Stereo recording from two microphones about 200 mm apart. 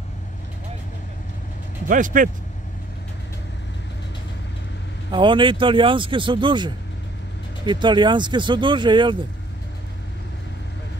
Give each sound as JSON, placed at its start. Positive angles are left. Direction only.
{"t": 1.9, "sound": "speech", "side_deg": -40}
{"t": 5.1, "sound": "speech", "side_deg": -25}